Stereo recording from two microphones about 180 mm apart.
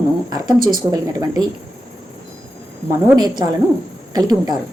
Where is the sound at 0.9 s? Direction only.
20° right (ahead or behind).